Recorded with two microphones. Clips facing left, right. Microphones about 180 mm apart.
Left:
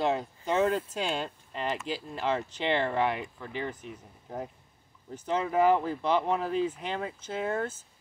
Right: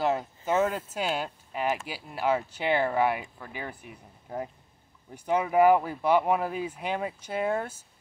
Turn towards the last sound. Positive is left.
turn(degrees=-10)  # may be behind; listen again after turning